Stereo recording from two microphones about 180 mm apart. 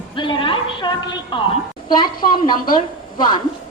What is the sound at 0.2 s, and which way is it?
A woman's voice, 25° left (ahead or behind).